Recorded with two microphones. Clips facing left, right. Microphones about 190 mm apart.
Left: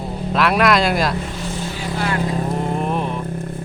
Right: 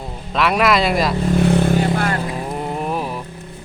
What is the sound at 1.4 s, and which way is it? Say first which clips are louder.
Vehicle: right 11 dB; 60° right (ahead or behind).